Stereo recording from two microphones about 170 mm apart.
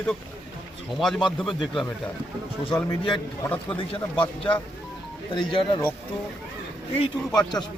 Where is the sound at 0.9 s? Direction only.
Centre (ahead or behind).